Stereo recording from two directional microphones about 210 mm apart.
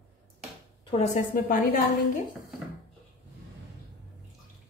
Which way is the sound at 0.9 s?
35° left (ahead or behind).